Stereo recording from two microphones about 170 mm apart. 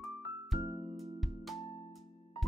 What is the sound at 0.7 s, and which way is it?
Music, 15° right (ahead or behind).